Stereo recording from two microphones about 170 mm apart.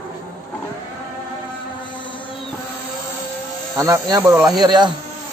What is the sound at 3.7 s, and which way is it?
Speech, 20° right (ahead or behind).